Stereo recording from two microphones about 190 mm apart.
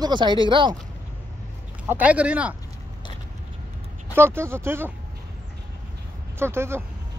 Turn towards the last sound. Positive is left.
turn(degrees=-15)  # may be behind; listen again after turning